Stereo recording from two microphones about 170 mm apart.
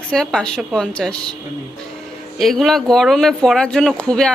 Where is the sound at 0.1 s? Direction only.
5° left (ahead or behind).